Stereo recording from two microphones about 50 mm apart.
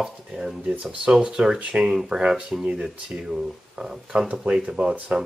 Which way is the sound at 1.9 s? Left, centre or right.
Centre.